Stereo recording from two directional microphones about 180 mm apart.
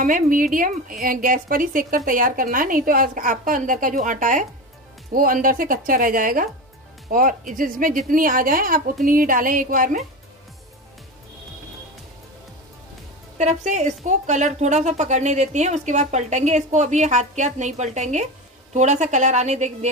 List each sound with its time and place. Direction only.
0.0 s a woman's voice: 50° right (ahead or behind)
13.4 s a woman's voice: 40° right (ahead or behind)